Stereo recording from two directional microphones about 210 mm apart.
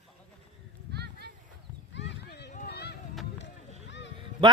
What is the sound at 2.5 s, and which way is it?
Chop, 50° left (ahead or behind).